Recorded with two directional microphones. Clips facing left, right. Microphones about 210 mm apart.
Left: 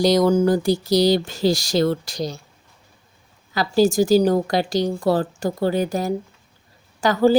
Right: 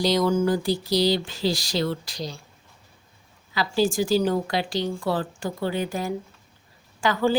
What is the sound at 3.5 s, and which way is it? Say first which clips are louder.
A woman's voice: left 6 dB; 40° left (ahead or behind).